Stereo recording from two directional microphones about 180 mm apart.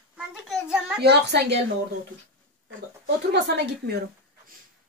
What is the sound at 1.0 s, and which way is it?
Speech, 70° right (ahead or behind).